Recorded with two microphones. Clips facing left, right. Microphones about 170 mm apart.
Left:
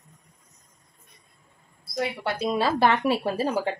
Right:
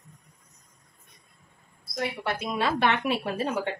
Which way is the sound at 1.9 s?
30° left (ahead or behind).